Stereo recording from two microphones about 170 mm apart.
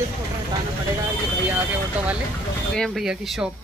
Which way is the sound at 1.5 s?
10° right (ahead or behind).